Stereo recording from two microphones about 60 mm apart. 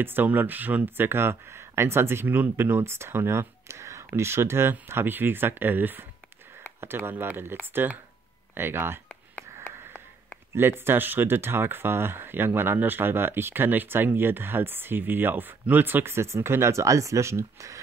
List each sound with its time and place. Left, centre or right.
0.0 s speech: right
2.2 s speech: right
2.5 s speech: right
9.1 s a sound: left
9.8 s a sound: right
10.5 s speech: right